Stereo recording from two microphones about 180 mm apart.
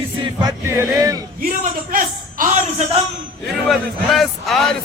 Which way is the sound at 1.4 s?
50° right (ahead or behind).